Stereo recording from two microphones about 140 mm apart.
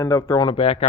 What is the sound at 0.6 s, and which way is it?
Speech, 45° left (ahead or behind).